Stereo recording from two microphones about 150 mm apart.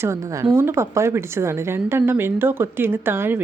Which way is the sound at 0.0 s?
20° right (ahead or behind).